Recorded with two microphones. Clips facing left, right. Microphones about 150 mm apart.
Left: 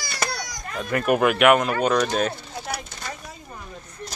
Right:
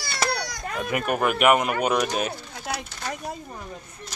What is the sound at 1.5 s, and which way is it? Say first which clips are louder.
Speech: left 2 dB; 15° right (ahead or behind).